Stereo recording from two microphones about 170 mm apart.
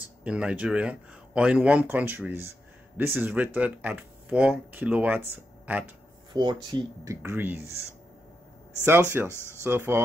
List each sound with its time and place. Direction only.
0.2 s speech: 5° right (ahead or behind)
6.3 s speech: 25° right (ahead or behind)
7.2 s speech: 10° right (ahead or behind)
8.8 s speech: 15° right (ahead or behind)